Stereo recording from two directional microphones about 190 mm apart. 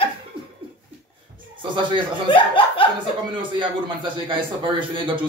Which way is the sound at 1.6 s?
25° right (ahead or behind).